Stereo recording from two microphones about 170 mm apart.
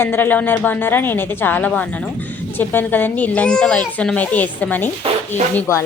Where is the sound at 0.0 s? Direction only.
10° left (ahead or behind).